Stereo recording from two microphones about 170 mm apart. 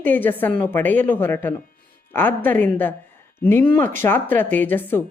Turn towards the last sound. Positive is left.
turn(degrees=10)  # may be behind; listen again after turning